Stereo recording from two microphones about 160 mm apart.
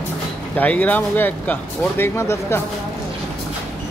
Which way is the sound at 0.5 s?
10° left (ahead or behind).